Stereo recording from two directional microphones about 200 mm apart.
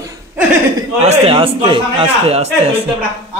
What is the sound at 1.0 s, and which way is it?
A man's voice, 25° right (ahead or behind).